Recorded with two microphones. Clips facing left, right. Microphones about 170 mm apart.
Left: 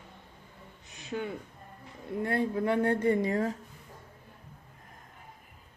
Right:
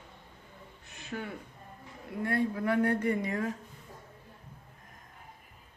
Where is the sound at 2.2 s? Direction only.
25° left (ahead or behind).